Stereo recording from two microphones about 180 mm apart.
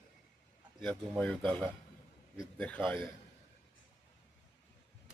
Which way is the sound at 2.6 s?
5° left (ahead or behind).